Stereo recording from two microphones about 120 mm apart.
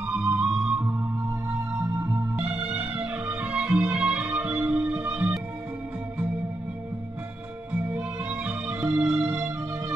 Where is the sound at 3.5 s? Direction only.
10° right (ahead or behind).